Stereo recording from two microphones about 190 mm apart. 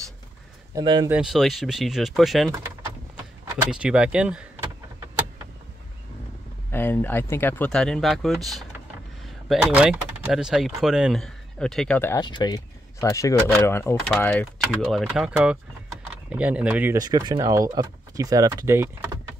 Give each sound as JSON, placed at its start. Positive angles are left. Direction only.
{"t": 0.7, "sound": "speech", "side_deg": -25}
{"t": 1.0, "sound": "speech", "side_deg": -5}
{"t": 3.7, "sound": "speech", "side_deg": -5}
{"t": 6.7, "sound": "speech", "side_deg": 10}
{"t": 12.2, "sound": "speech", "side_deg": 25}
{"t": 16.9, "sound": "speech", "side_deg": -20}